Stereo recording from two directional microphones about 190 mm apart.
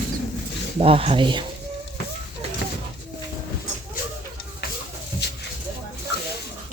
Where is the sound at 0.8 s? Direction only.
30° right (ahead or behind).